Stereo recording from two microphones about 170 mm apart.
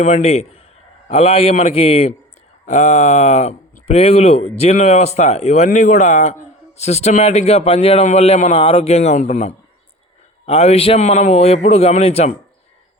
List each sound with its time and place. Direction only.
0.0 s speech: 40° left (ahead or behind)